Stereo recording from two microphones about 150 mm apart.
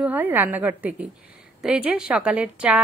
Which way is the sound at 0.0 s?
10° right (ahead or behind).